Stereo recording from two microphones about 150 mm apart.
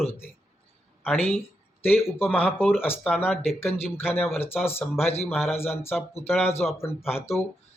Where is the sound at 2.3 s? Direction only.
15° left (ahead or behind).